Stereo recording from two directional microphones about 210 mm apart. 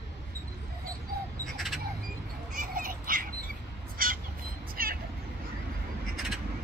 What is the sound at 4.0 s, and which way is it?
Crow, 40° right (ahead or behind).